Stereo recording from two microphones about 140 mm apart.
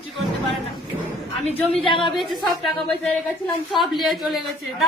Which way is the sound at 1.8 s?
40° left (ahead or behind).